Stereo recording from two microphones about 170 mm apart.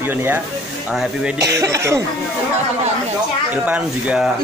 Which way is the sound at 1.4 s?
20° right (ahead or behind).